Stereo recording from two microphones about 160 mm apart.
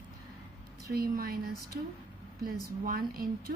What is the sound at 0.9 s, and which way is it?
Speech, 70° right (ahead or behind).